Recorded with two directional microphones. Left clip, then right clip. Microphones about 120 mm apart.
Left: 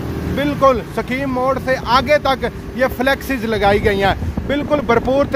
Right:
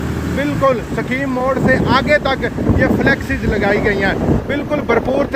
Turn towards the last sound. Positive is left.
turn(degrees=35)  # may be behind; listen again after turning